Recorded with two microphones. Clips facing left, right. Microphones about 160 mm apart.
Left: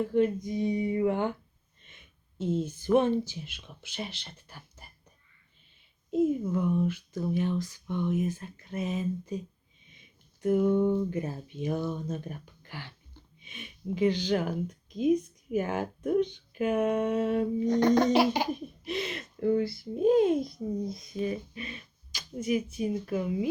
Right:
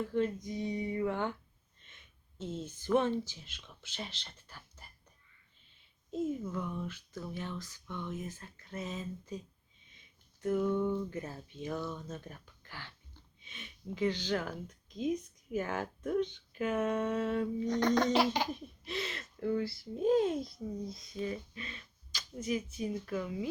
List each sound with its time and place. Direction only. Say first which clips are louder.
0.0 s speech: left 7 dB; 15° left (ahead or behind)
6.1 s speech: left 9 dB; 10° left (ahead or behind)
9.8 s a sound: left 6 dB; 15° left (ahead or behind)
11.1 s speech: left 7 dB; 15° left (ahead or behind)